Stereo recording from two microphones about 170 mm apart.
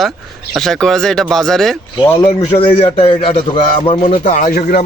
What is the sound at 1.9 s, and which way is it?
Speech, 20° left (ahead or behind).